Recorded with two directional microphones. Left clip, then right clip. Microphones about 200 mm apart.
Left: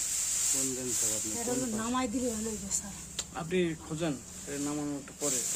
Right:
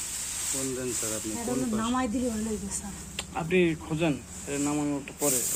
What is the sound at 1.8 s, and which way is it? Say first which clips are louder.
Speech: right 5 dB; 35° left (ahead or behind).